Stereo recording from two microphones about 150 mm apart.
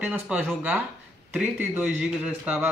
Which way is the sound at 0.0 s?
10° right (ahead or behind).